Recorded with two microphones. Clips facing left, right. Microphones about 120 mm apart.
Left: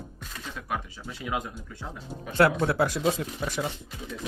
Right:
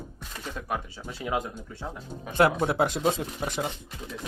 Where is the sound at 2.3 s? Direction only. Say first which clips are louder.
Even; 20° right (ahead or behind).